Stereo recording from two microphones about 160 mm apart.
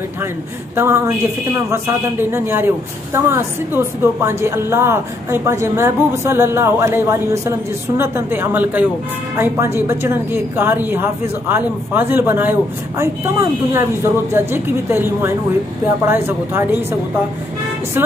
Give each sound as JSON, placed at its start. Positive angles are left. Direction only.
{"t": 0.7, "sound": "a woman's voice", "side_deg": -15}